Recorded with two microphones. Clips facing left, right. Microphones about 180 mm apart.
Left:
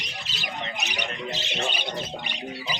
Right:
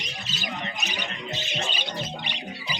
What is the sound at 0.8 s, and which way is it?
Speech, 70° left (ahead or behind).